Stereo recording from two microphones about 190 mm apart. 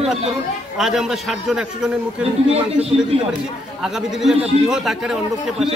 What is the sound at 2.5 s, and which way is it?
Speech, 30° right (ahead or behind).